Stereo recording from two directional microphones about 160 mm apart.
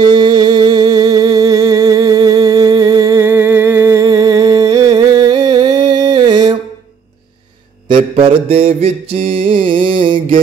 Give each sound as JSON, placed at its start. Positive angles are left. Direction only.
{"t": 0.0, "sound": "music", "side_deg": -25}
{"t": 7.9, "sound": "mantra", "side_deg": -35}